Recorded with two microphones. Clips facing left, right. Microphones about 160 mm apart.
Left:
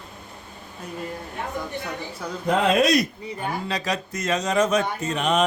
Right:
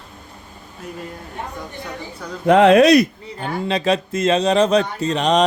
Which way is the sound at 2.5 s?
75° right (ahead or behind).